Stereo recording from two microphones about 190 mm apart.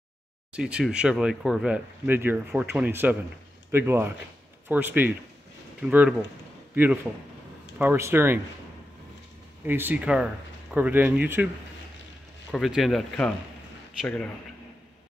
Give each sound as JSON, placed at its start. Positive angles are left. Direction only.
{"t": 0.5, "sound": "a man's voice", "side_deg": -5}
{"t": 9.7, "sound": "speech", "side_deg": -10}
{"t": 12.5, "sound": "a man's voice", "side_deg": 0}